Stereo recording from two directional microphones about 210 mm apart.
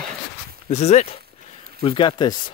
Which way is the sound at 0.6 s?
35° left (ahead or behind).